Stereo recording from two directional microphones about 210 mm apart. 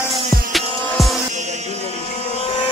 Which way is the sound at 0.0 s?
Centre (ahead or behind).